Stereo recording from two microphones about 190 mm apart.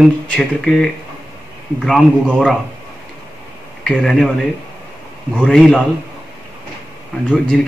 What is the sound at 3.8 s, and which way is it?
Speech, 5° left (ahead or behind).